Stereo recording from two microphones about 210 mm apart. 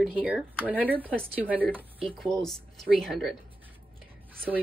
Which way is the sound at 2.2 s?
Centre (ahead or behind).